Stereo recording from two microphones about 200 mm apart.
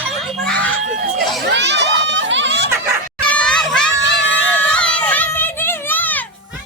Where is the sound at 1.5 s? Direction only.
60° right (ahead or behind).